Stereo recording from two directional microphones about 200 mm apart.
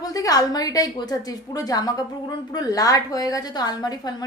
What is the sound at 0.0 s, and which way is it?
A woman's voice, 20° left (ahead or behind).